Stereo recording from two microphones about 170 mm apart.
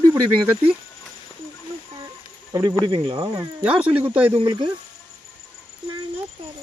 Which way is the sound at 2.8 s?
25° right (ahead or behind).